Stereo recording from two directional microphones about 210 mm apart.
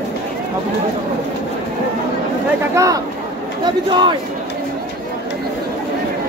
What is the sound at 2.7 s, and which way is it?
Speech, 15° right (ahead or behind).